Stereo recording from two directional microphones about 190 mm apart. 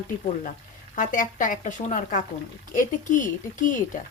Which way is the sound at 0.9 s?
45° left (ahead or behind).